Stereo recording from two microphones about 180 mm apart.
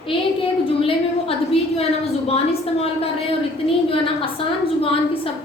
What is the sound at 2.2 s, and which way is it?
Speech, 35° left (ahead or behind).